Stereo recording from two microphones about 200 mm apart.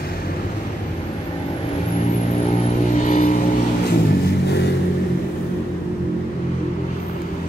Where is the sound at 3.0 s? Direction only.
40° left (ahead or behind).